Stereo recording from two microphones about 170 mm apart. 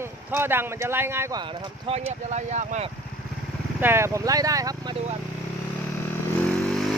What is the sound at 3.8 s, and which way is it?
Speech, 15° right (ahead or behind).